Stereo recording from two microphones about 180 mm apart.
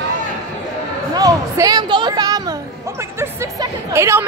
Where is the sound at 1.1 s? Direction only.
20° right (ahead or behind).